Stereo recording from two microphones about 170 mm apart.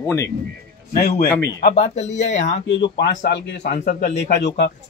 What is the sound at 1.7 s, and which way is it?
Speech, 40° left (ahead or behind).